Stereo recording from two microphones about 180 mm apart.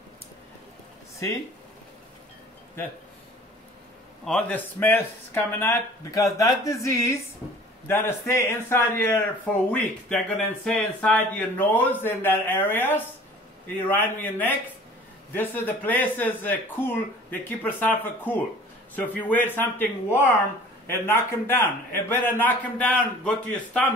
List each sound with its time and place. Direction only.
4.2 s speech: 5° left (ahead or behind)